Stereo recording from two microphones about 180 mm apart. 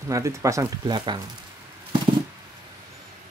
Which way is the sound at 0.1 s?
15° right (ahead or behind).